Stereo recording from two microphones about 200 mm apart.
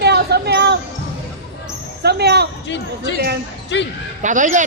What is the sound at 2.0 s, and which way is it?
Speech, 55° right (ahead or behind).